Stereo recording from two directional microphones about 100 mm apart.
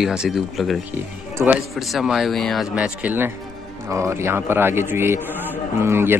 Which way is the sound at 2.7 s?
15° right (ahead or behind).